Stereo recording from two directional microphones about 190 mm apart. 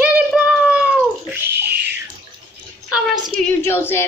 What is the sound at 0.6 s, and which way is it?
Cat, 5° right (ahead or behind).